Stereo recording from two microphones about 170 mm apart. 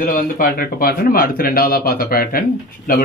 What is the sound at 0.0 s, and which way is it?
Speech, 60° left (ahead or behind).